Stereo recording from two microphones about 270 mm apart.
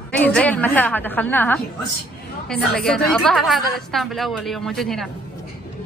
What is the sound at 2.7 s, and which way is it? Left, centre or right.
A woman's voice, centre.